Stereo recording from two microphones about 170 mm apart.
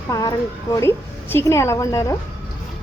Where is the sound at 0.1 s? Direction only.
20° left (ahead or behind).